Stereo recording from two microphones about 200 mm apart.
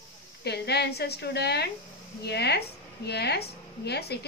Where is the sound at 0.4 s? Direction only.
55° left (ahead or behind).